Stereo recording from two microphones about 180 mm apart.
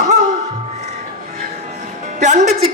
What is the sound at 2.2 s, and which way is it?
Speech, 45° right (ahead or behind).